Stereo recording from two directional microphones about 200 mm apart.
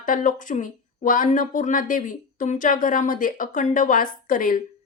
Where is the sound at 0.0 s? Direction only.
40° left (ahead or behind).